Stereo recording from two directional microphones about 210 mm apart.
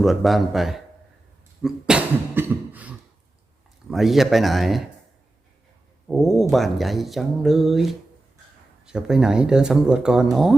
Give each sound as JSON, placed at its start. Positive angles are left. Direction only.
{"t": 0.0, "sound": "speech", "side_deg": 0}
{"t": 1.6, "sound": "cough", "side_deg": -5}
{"t": 3.8, "sound": "speech", "side_deg": 0}
{"t": 6.1, "sound": "speech", "side_deg": 0}